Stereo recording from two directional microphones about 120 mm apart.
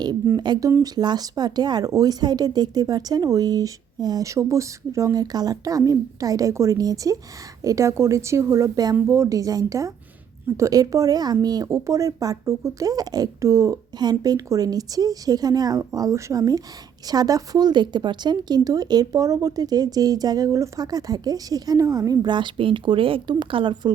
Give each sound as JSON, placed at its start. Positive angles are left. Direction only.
{"t": 0.3, "sound": "a woman's voice", "side_deg": -35}